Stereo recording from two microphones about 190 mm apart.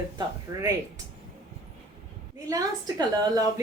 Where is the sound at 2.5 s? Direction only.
20° right (ahead or behind).